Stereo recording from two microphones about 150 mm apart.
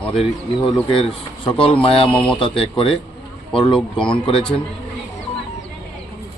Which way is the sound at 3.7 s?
5° left (ahead or behind).